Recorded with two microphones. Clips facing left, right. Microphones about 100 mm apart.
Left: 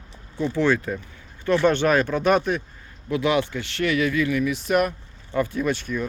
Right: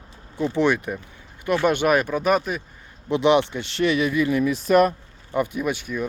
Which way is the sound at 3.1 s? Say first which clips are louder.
Right 4 dB; 25° right (ahead or behind).